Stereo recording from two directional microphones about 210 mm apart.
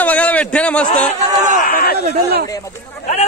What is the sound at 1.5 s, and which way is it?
Speech, 40° left (ahead or behind).